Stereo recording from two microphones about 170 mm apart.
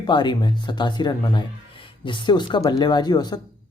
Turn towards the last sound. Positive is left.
turn(degrees=25)  # may be behind; listen again after turning